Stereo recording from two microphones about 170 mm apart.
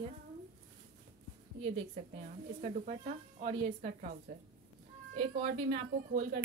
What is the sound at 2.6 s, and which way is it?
A woman's voice, 40° right (ahead or behind).